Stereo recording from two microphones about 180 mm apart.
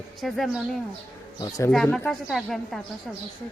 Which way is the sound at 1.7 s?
Centre (ahead or behind).